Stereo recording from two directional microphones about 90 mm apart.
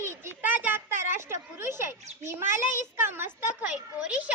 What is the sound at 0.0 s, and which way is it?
A child's voice, 30° right (ahead or behind).